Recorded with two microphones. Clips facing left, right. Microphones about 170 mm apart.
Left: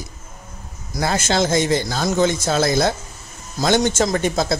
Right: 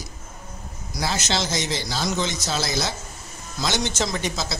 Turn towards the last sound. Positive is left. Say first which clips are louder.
# left 8 dB
turn(degrees=50)  # may be behind; listen again after turning